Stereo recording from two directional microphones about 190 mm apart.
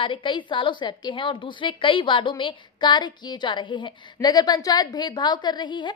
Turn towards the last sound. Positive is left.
turn(degrees=25)  # may be behind; listen again after turning